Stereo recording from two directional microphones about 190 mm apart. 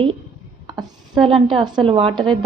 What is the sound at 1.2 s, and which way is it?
A woman's voice, 25° right (ahead or behind).